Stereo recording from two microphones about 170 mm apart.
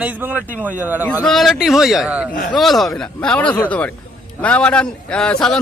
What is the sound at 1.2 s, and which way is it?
A man's voice, centre (ahead or behind).